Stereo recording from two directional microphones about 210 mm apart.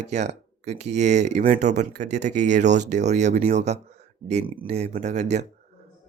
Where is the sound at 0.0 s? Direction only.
35° right (ahead or behind).